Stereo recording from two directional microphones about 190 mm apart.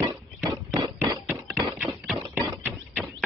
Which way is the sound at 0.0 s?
20° right (ahead or behind).